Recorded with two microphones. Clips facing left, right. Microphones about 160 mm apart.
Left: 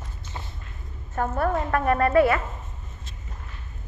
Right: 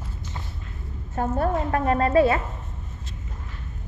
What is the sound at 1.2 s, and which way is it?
Speech, 30° right (ahead or behind).